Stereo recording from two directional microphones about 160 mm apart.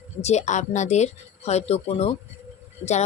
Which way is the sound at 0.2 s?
45° left (ahead or behind).